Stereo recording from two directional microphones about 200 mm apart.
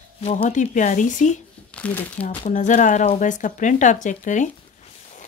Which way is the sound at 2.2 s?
35° left (ahead or behind).